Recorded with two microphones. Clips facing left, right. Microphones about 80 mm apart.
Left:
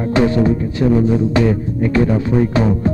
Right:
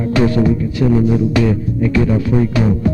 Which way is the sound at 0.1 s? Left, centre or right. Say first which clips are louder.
Even; left.